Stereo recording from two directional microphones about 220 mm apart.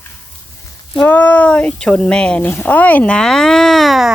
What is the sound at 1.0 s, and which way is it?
Speech, 5° left (ahead or behind).